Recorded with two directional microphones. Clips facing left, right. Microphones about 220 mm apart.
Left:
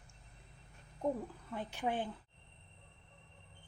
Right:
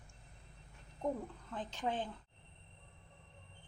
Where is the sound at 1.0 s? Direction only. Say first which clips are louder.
Left 2 dB; 5° left (ahead or behind).